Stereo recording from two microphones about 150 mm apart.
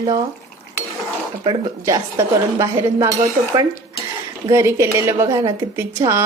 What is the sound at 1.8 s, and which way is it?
A woman's voice, 20° right (ahead or behind).